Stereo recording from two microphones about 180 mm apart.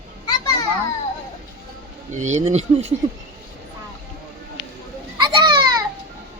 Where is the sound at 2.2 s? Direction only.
40° right (ahead or behind).